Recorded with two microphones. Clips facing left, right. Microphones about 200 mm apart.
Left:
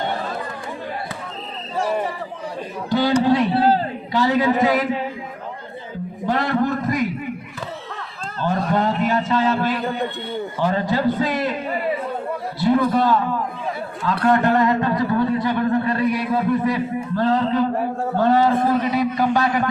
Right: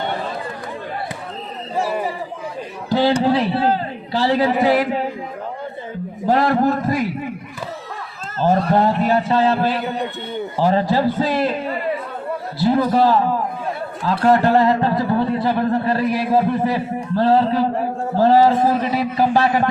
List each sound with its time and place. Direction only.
1.8 s chatter: 5° right (ahead or behind)
2.9 s a man's voice: 35° right (ahead or behind)
6.2 s a man's voice: 40° right (ahead or behind)
8.4 s a man's voice: 35° right (ahead or behind)
12.6 s a man's voice: 35° right (ahead or behind)